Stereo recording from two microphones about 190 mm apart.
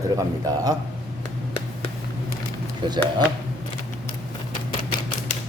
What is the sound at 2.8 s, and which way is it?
Speech, 25° right (ahead or behind).